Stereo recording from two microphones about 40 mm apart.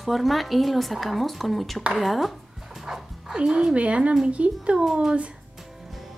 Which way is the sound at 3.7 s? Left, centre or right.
Right.